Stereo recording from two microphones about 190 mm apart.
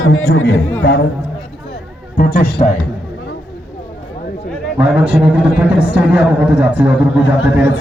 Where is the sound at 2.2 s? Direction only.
55° left (ahead or behind).